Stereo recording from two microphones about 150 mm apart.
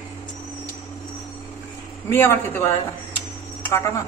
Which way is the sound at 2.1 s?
15° left (ahead or behind).